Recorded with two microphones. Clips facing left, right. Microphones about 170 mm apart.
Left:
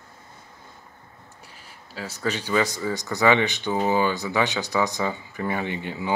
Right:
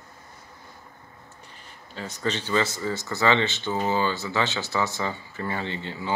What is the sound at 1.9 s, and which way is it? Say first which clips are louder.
Speech: left 1 dB; 5° left (ahead or behind).